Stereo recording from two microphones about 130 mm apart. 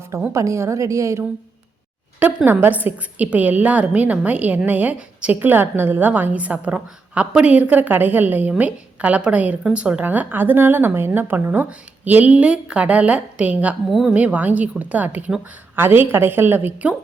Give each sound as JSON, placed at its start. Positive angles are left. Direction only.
{"t": 0.1, "sound": "a woman's voice", "side_deg": -20}